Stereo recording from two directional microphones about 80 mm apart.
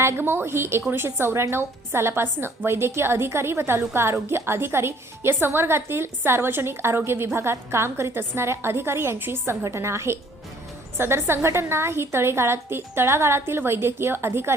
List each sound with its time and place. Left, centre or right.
0.0 s a woman's voice: right